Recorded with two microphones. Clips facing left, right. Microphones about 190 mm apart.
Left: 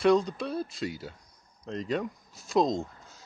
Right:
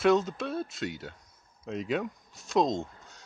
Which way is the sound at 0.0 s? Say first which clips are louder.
Left 1 dB; centre (ahead or behind).